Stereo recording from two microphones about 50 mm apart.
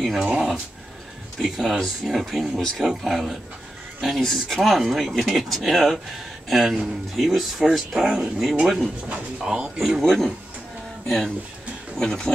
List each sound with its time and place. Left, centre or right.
0.0 s speech: centre
1.4 s speech: centre
10.0 s speech: centre